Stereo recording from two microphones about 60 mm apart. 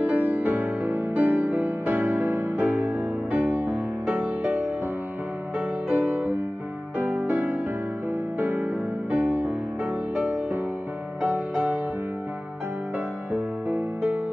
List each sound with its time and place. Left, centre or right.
0.1 s music: right
5.9 s music: right
13.3 s music: right